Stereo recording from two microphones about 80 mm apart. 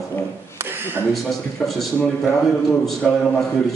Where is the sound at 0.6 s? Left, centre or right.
Right.